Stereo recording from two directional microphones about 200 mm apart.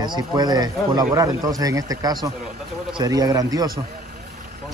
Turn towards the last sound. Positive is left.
turn(degrees=-20)  # may be behind; listen again after turning